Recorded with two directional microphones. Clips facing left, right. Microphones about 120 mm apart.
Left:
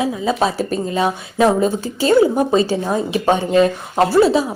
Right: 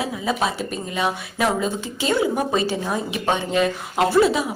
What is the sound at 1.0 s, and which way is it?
Speech, 25° left (ahead or behind).